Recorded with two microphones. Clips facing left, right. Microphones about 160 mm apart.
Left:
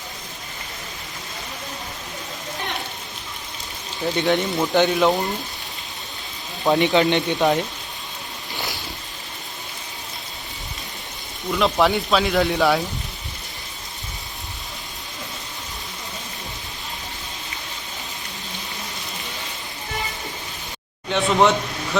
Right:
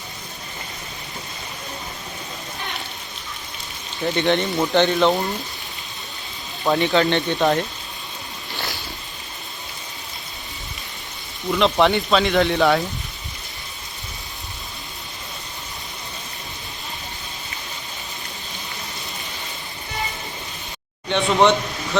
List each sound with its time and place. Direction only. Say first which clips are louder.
4.0 s speech: right 1 dB; 5° left (ahead or behind)
4.7 s speech: even; 15° left (ahead or behind)
4.9 s speech: right 1 dB; 5° left (ahead or behind)
6.7 s speech: left 1 dB; 20° left (ahead or behind)
7.3 s speech: right 1 dB; centre (ahead or behind)
8.5 s a sound: even; 15° left (ahead or behind)
11.5 s speech: right 1 dB; 5° left (ahead or behind)
21.1 s a sound: right 1 dB; 5° left (ahead or behind)